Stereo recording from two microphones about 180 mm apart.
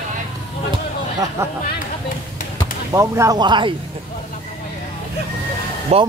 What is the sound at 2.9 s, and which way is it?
Speech, 15° right (ahead or behind).